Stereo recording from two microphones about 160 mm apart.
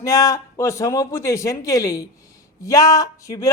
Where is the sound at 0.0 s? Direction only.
20° left (ahead or behind).